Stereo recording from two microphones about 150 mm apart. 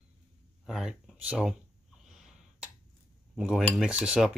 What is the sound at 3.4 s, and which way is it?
Speech, 5° right (ahead or behind).